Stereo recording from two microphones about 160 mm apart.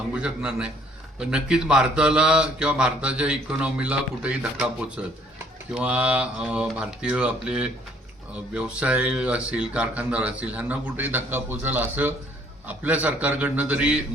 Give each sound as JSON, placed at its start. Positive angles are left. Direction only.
{"t": 0.1, "sound": "speech", "side_deg": -5}